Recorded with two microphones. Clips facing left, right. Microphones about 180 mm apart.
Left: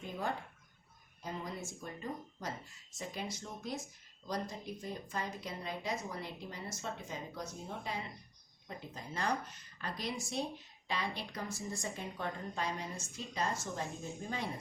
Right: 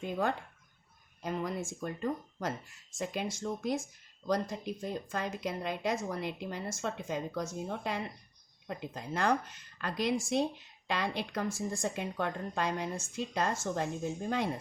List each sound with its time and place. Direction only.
1.2 s speech: 65° right (ahead or behind)
4.3 s speech: 90° right
6.1 s speech: 70° right (ahead or behind)
6.7 s a woman's voice: 85° right
11.4 s speech: 50° right (ahead or behind)
11.9 s speech: 65° right (ahead or behind)